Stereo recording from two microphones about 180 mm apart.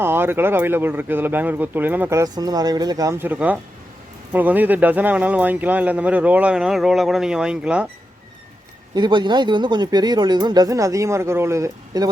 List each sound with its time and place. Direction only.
0.0 s speech: 15° right (ahead or behind)
9.0 s speech: 25° right (ahead or behind)